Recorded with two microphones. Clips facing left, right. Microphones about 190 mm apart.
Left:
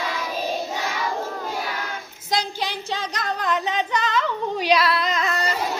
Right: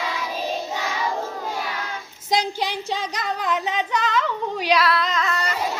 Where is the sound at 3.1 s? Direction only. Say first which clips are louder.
Left 2 dB; 5° right (ahead or behind).